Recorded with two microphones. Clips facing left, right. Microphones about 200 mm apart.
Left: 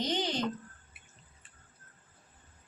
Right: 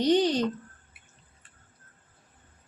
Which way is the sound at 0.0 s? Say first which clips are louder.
Right 10 dB; 65° right (ahead or behind).